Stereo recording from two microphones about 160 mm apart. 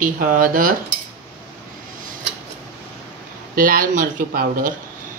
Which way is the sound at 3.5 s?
60° right (ahead or behind).